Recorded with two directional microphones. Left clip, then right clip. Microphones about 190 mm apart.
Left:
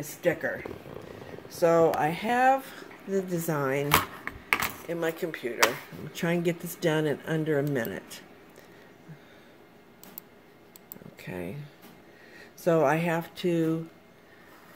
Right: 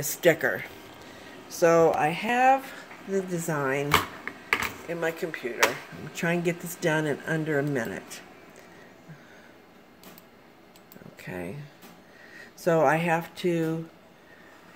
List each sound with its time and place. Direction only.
0.0 s speech: 55° right (ahead or behind)
1.5 s speech: 10° right (ahead or behind)
2.0 s speech: 5° left (ahead or behind)
3.9 s typing: 40° left (ahead or behind)
4.8 s speech: 5° left (ahead or behind)
11.1 s speech: 5° left (ahead or behind)